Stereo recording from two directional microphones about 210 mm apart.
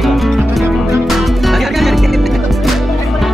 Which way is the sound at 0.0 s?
Centre (ahead or behind).